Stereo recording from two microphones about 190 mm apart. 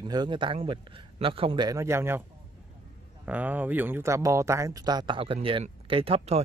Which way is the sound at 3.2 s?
10° right (ahead or behind).